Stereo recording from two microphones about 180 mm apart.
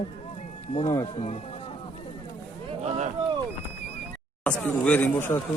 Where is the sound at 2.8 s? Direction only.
35° right (ahead or behind).